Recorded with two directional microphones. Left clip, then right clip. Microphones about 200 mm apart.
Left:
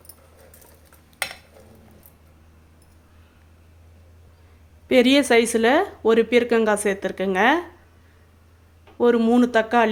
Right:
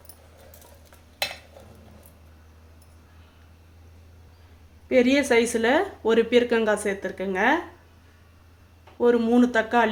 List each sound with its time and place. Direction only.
4.9 s speech: 40° left (ahead or behind)
9.0 s speech: 35° left (ahead or behind)